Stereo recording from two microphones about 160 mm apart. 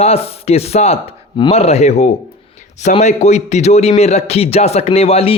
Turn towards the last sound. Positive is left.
turn(degrees=40)  # may be behind; listen again after turning